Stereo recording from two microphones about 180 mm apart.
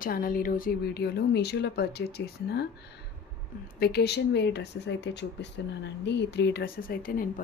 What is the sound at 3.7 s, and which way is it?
Speech, 60° left (ahead or behind).